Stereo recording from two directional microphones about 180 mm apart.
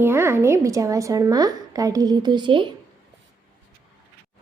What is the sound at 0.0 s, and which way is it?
A woman's voice, 15° right (ahead or behind).